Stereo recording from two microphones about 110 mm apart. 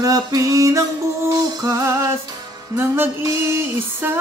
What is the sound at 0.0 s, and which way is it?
Music, 35° right (ahead or behind).